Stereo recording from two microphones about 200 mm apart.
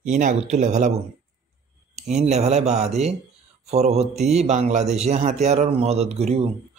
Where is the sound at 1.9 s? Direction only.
35° right (ahead or behind).